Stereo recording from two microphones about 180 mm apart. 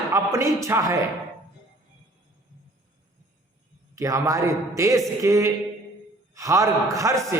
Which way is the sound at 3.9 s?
15° right (ahead or behind).